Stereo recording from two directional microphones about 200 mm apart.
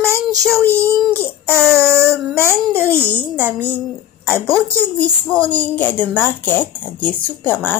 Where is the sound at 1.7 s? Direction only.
15° right (ahead or behind).